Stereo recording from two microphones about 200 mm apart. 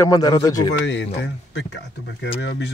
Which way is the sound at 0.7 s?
65° left (ahead or behind).